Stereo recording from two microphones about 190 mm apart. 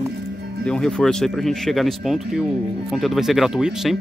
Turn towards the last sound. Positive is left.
turn(degrees=0)  # may be behind; listen again after turning